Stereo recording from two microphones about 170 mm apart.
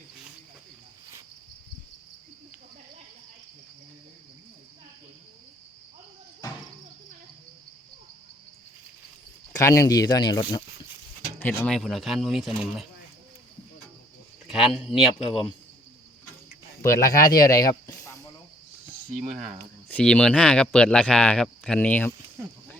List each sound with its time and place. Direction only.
9.5 s speech: 20° left (ahead or behind)
11.3 s speech: 10° left (ahead or behind)
14.6 s speech: centre (ahead or behind)
16.8 s speech: 20° left (ahead or behind)
19.2 s speech: 40° right (ahead or behind)
19.9 s speech: 5° left (ahead or behind)